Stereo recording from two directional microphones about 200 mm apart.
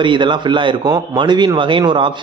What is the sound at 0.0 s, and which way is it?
A man's voice, 25° right (ahead or behind).